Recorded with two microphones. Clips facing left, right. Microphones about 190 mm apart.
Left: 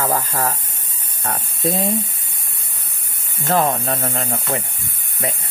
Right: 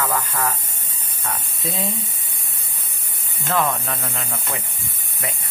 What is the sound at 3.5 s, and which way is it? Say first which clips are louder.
Speech: left 4 dB; 35° left (ahead or behind).